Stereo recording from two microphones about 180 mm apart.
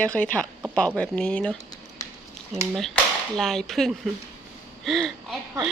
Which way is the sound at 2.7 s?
Centre (ahead or behind).